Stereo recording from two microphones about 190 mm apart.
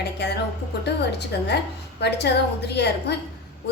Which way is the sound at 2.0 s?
65° left (ahead or behind).